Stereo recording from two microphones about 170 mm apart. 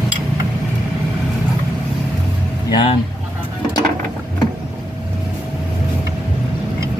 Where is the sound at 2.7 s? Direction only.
30° left (ahead or behind).